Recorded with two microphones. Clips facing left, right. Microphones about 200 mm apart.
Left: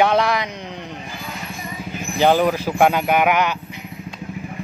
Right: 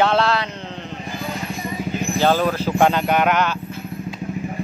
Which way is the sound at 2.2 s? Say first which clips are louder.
Left 3 dB; 15° left (ahead or behind).